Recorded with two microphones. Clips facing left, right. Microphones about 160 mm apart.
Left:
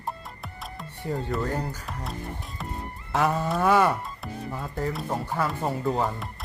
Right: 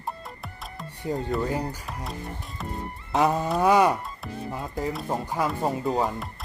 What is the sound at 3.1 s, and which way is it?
Livestock, 20° right (ahead or behind).